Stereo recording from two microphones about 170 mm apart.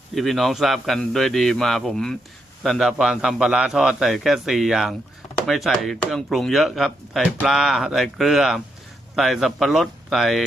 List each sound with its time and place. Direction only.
0.1 s a man's voice: centre (ahead or behind)